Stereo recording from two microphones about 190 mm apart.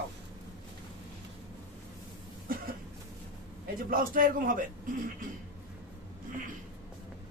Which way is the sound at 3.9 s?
45° right (ahead or behind).